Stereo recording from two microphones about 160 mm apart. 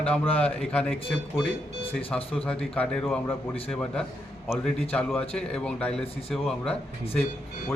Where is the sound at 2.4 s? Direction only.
5° left (ahead or behind).